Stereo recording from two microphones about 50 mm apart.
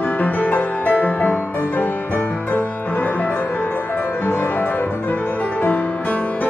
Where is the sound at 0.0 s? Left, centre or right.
Left.